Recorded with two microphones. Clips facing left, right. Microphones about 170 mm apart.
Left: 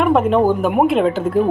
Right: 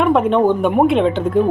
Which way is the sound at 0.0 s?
5° left (ahead or behind).